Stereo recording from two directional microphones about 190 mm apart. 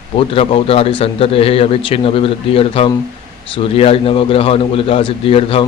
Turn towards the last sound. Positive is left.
turn(degrees=30)  # may be behind; listen again after turning